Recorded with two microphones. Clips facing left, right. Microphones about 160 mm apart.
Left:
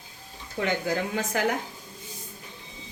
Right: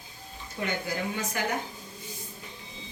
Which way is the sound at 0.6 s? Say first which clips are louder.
Left 5 dB; 90° left.